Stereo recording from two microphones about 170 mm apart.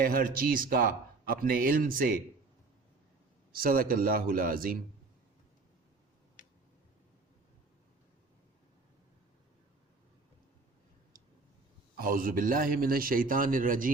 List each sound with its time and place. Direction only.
0.0 s a man's voice: 60° right (ahead or behind)
3.5 s a man's voice: 55° right (ahead or behind)
11.9 s a man's voice: 55° right (ahead or behind)